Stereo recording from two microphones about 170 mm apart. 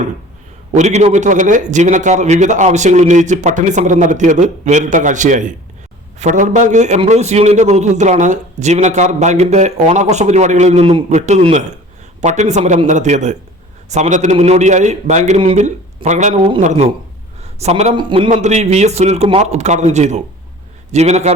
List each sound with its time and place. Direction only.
0.7 s a man's voice: 45° right (ahead or behind)
16.3 s a man's voice: 30° right (ahead or behind)
16.6 s a man's voice: 40° right (ahead or behind)
17.4 s a sound: 40° right (ahead or behind)
17.9 s a man's voice: 30° right (ahead or behind)
18.4 s a man's voice: 40° right (ahead or behind)